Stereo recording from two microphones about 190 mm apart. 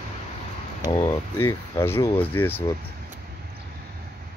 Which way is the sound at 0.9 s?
15° left (ahead or behind).